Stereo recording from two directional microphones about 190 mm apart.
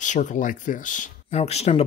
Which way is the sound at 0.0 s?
40° left (ahead or behind).